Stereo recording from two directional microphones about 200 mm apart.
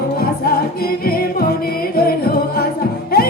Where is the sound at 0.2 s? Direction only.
50° left (ahead or behind).